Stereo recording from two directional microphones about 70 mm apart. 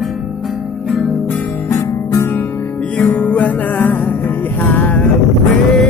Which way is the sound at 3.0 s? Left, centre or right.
Left.